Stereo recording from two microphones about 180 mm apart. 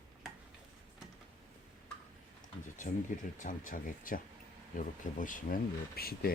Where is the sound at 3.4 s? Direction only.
50° left (ahead or behind).